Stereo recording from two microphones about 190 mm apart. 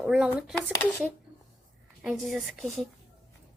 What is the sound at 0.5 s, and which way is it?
Speech, 10° left (ahead or behind).